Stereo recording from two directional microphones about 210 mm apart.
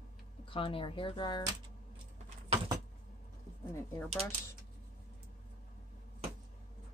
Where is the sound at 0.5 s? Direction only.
25° left (ahead or behind).